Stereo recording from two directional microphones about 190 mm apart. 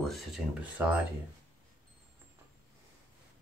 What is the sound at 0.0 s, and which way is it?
Speech, centre (ahead or behind).